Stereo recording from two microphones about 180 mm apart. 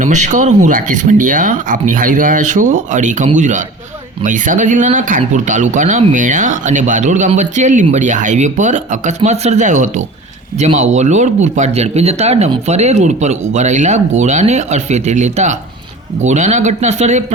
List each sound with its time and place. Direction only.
0.0 s speech: 40° right (ahead or behind)